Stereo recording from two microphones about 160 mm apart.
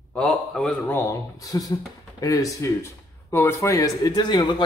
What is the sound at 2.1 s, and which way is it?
Speech, 20° left (ahead or behind).